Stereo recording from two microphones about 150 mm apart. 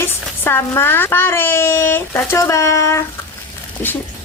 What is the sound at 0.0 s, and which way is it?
A child's voice, 15° left (ahead or behind).